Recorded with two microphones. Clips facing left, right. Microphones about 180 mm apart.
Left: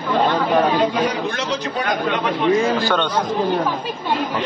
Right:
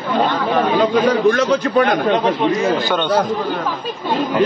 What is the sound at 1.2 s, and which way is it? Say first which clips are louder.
Speech: right 9 dB; 55° right (ahead or behind).